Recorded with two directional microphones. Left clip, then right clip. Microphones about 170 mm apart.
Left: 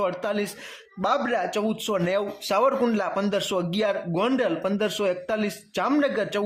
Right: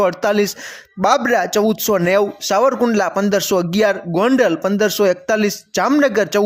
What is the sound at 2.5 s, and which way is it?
Speech, 25° right (ahead or behind).